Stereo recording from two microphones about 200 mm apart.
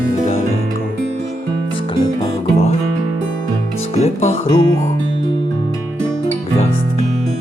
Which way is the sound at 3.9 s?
30° left (ahead or behind).